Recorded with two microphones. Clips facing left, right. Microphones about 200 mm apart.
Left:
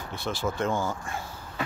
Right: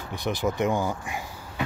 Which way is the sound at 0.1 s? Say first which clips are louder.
Right 4 dB; 15° right (ahead or behind).